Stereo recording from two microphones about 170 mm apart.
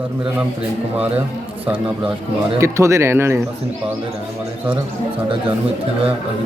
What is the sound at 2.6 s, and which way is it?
Speech, 15° right (ahead or behind).